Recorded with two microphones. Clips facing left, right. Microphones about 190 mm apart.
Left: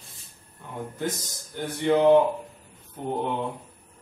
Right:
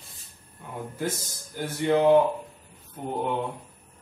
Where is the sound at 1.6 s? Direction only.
5° right (ahead or behind).